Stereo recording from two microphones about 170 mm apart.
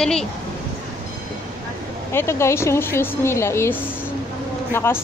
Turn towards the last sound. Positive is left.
turn(degrees=15)  # may be behind; listen again after turning